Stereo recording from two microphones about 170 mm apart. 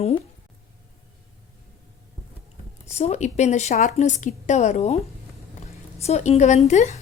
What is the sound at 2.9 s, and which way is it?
A woman's voice, 40° left (ahead or behind).